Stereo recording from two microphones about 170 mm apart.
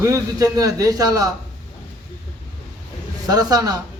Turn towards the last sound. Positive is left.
turn(degrees=-20)  # may be behind; listen again after turning